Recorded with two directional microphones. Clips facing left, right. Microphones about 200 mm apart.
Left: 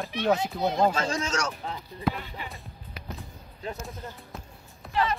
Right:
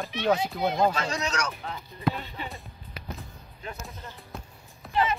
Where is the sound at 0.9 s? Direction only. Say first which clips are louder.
Left 2 dB; 30° left (ahead or behind).